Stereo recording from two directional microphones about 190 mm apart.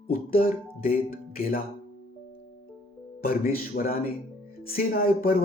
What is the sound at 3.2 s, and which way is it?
Speech, 50° left (ahead or behind).